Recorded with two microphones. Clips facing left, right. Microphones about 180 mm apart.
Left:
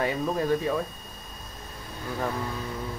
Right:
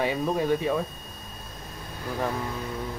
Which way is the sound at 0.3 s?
Centre (ahead or behind).